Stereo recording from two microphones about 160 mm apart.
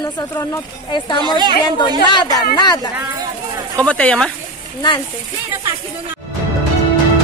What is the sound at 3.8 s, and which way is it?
Speech, 10° left (ahead or behind).